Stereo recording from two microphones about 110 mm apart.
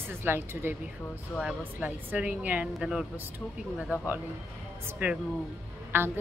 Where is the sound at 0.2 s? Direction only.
20° right (ahead or behind).